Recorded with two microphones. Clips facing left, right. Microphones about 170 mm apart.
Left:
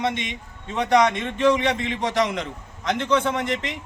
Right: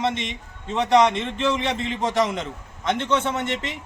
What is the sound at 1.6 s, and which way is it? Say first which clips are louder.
A man's voice: left 1 dB; centre (ahead or behind).